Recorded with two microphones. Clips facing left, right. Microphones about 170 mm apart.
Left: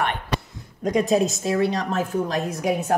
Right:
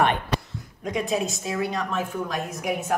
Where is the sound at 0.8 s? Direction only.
40° left (ahead or behind).